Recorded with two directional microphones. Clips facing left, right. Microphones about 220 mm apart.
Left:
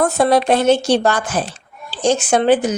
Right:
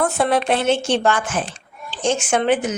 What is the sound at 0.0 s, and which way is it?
Speech, 40° left (ahead or behind).